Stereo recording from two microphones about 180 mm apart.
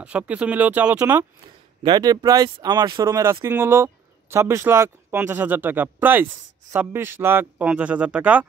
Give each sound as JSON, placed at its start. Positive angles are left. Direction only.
{"t": 0.0, "sound": "speech", "side_deg": -5}
{"t": 1.8, "sound": "speech", "side_deg": -25}